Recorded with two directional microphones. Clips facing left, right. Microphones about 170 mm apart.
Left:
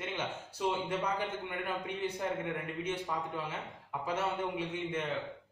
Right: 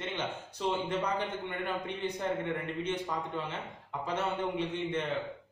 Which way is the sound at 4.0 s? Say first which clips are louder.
Right 1 dB; 10° left (ahead or behind).